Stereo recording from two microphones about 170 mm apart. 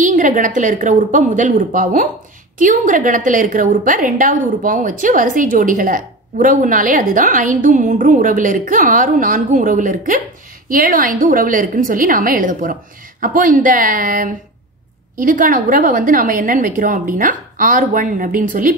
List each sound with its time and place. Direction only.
0.0 s a woman's voice: 50° right (ahead or behind)